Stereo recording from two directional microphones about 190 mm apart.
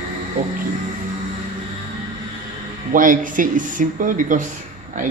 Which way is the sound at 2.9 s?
45° right (ahead or behind).